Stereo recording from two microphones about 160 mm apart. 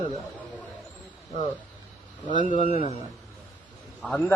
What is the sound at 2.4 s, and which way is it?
Speech, 55° left (ahead or behind).